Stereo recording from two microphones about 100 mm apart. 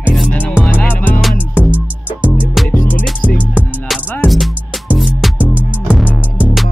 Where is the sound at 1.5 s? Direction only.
15° right (ahead or behind).